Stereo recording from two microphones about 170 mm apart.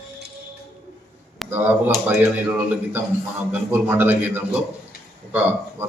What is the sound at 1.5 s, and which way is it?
Speech, 10° right (ahead or behind).